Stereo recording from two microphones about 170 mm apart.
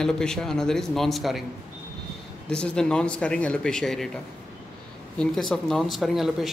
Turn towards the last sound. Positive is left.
turn(degrees=0)  # may be behind; listen again after turning